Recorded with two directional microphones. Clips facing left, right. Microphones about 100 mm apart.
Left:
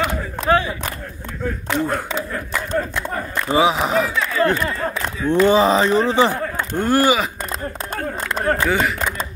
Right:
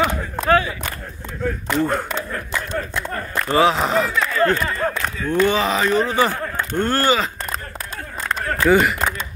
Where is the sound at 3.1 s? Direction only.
10° left (ahead or behind).